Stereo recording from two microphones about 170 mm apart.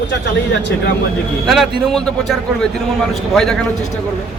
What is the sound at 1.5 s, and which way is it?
Speech, centre (ahead or behind).